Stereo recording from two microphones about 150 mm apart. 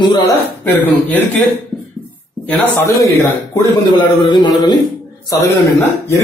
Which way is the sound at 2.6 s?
20° left (ahead or behind).